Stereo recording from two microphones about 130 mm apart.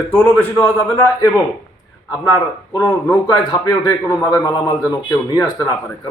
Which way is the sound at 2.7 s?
25° left (ahead or behind).